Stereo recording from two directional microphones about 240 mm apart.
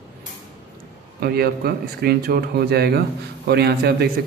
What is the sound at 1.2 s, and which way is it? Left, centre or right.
A man's voice, right.